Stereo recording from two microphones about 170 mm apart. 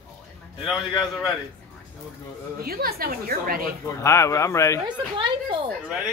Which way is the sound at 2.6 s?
65° right (ahead or behind).